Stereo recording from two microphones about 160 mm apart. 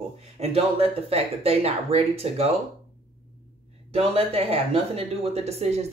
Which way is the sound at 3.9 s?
35° right (ahead or behind).